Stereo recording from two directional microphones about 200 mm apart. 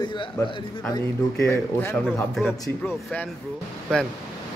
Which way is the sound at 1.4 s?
10° left (ahead or behind).